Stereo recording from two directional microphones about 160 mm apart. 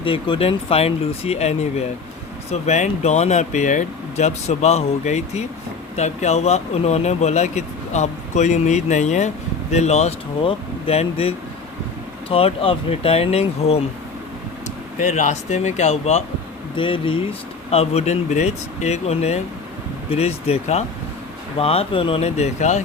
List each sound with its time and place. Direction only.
0.0 s speech: 35° left (ahead or behind)
14.9 s speech: 50° left (ahead or behind)